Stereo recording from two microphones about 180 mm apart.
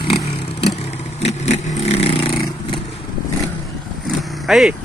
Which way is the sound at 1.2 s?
35° left (ahead or behind).